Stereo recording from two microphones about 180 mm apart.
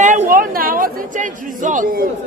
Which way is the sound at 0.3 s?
55° right (ahead or behind).